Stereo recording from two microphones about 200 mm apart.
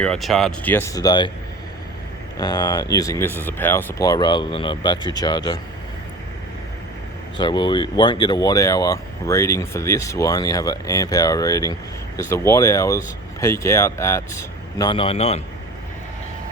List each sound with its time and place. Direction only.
0.0 s speech: centre (ahead or behind); by 1.3 s 20° left (ahead or behind)
2.4 s speech: 20° left (ahead or behind)
7.3 s speech: 20° left (ahead or behind)